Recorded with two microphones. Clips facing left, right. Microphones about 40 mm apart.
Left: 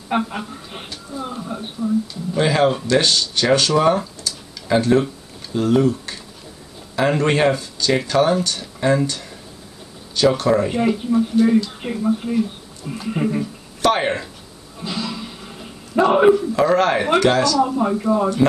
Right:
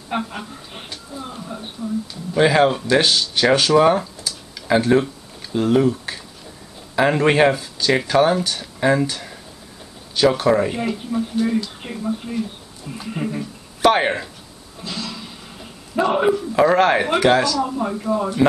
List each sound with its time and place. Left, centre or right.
0.1 s a sound: centre
1.4 s speech: centre
2.3 s speech: centre
10.8 s speech: centre
13.8 s speech: centre
14.8 s a sound: centre
16.5 s speech: centre
17.6 s speech: centre